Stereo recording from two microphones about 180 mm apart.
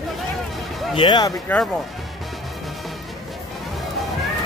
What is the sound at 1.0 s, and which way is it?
Speech, 25° left (ahead or behind).